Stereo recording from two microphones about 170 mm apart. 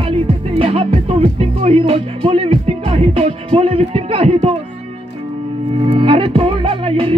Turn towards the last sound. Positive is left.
turn(degrees=-35)  # may be behind; listen again after turning